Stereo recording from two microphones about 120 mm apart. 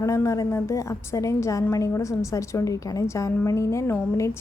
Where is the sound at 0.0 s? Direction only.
25° left (ahead or behind).